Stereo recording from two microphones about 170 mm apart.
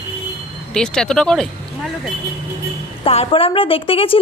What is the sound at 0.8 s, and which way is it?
Speech, 5° left (ahead or behind).